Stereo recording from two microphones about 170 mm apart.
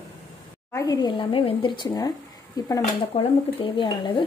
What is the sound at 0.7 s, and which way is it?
Speech, 20° left (ahead or behind).